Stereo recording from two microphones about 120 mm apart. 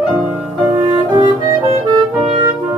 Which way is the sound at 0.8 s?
45° right (ahead or behind).